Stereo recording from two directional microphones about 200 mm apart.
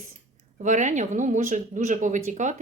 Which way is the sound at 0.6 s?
40° right (ahead or behind).